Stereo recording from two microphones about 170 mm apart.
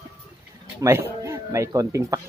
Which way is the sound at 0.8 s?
15° right (ahead or behind).